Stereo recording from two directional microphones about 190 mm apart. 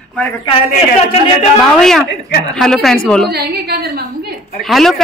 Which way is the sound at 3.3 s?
55° right (ahead or behind).